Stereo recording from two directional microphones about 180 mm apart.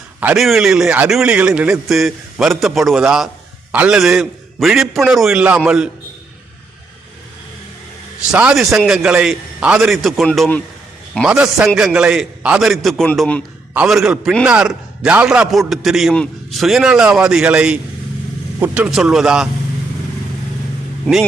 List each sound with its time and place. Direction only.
0.2 s a man's voice: 5° right (ahead or behind)
8.3 s a man's voice: 5° right (ahead or behind)
13.7 s a man's voice: 5° right (ahead or behind)
21.1 s a man's voice: 5° left (ahead or behind)